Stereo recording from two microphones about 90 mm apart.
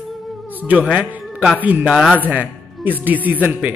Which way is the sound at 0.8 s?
10° right (ahead or behind).